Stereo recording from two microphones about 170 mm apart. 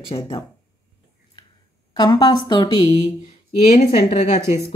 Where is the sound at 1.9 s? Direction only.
25° left (ahead or behind).